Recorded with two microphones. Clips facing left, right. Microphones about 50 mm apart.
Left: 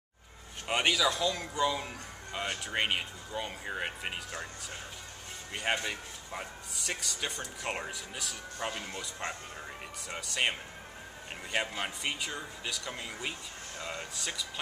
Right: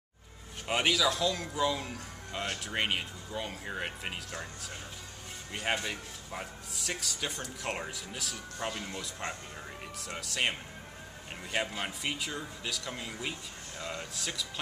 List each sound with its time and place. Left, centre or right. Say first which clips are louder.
0.7 s speech: even; centre
5.5 s speech: left 1 dB; centre